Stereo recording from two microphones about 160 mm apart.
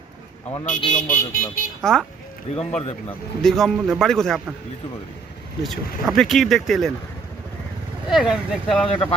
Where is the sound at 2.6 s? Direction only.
40° left (ahead or behind).